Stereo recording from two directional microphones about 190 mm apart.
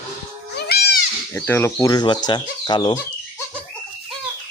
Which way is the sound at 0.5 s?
60° left (ahead or behind).